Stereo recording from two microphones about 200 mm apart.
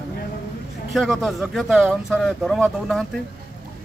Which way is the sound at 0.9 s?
Centre (ahead or behind).